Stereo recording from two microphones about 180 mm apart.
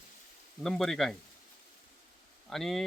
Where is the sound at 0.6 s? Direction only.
Centre (ahead or behind).